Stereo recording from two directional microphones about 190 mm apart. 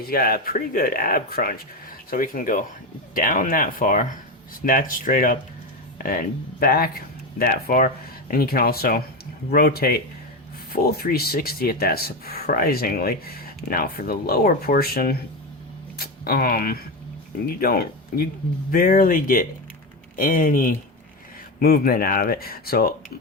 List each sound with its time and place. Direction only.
0.0 s speech: 50° left (ahead or behind)